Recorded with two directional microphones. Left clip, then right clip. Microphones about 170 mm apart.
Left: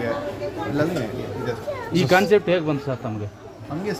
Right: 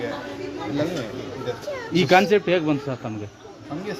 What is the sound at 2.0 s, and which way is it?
Speech, 50° right (ahead or behind).